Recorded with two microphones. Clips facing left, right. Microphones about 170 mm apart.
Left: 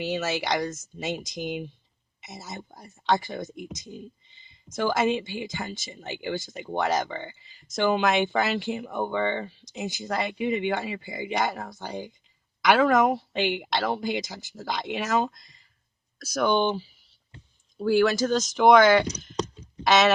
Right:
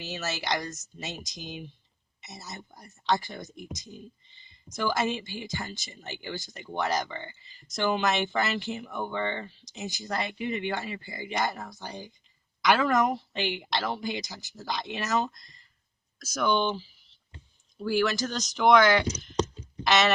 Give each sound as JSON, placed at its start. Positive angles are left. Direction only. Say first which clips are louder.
{"t": 0.0, "sound": "speech", "louder": "left 7 dB", "side_deg": 55}